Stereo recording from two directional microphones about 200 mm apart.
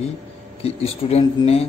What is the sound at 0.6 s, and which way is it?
Speech, 30° left (ahead or behind).